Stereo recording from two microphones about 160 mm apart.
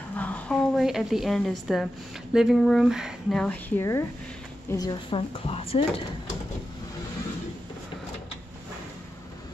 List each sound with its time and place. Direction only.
0.1 s a woman's voice: 10° left (ahead or behind); by 6.3 s 35° left (ahead or behind)